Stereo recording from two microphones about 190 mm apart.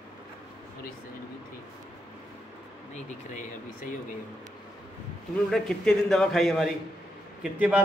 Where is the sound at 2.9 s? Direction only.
40° left (ahead or behind).